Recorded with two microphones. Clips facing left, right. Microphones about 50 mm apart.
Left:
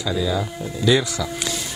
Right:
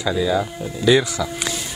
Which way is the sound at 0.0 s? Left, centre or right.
Centre.